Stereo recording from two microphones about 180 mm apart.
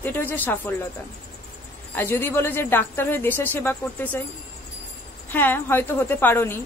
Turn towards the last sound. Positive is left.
turn(degrees=10)  # may be behind; listen again after turning